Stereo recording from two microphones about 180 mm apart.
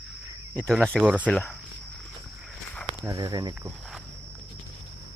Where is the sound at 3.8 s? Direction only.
Centre (ahead or behind).